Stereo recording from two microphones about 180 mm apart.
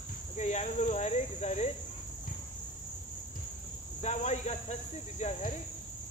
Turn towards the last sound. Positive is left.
turn(degrees=40)  # may be behind; listen again after turning